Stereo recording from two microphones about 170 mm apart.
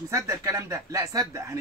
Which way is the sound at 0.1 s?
20° right (ahead or behind).